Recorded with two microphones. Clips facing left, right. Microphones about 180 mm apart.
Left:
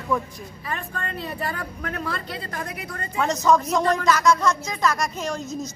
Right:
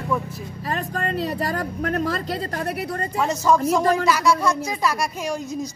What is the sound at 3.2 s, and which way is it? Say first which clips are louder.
Speech: even; 10° right (ahead or behind).